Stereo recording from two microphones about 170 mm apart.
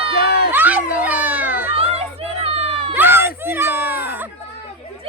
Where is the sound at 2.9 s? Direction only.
15° right (ahead or behind).